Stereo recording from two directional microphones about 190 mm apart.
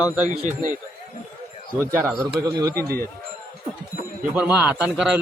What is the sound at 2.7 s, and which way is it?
Speech, 50° right (ahead or behind).